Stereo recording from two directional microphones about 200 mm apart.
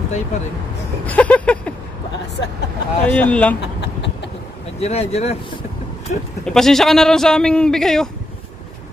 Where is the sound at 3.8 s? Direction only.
60° left (ahead or behind).